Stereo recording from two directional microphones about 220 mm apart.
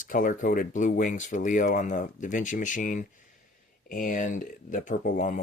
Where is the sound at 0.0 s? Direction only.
40° left (ahead or behind).